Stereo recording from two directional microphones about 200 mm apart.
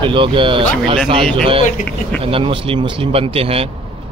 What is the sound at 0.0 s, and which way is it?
Speech, 25° right (ahead or behind).